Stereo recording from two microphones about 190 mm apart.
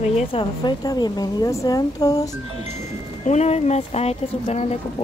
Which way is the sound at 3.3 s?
35° left (ahead or behind).